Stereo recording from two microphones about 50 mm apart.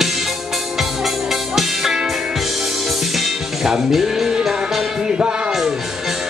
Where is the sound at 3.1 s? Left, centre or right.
Centre.